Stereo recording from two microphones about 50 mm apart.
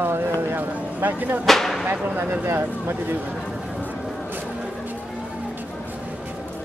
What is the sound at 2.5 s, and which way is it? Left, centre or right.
Speech, right.